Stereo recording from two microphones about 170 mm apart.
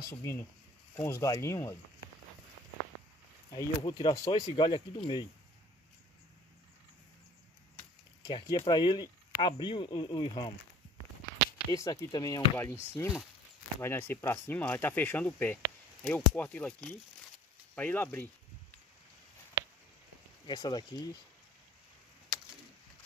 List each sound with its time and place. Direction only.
0.0 s speech: 15° left (ahead or behind)
3.5 s speech: 25° left (ahead or behind)
8.2 s speech: 25° left (ahead or behind)
11.7 s speech: 20° left (ahead or behind)
19.6 s a sound: 15° right (ahead or behind)
20.4 s speech: 25° left (ahead or behind)